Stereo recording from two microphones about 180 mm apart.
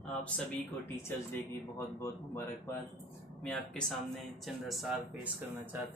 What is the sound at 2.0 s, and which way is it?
Speech, 15° left (ahead or behind).